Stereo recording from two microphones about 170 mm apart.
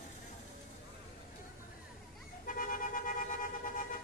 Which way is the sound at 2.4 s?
50° left (ahead or behind).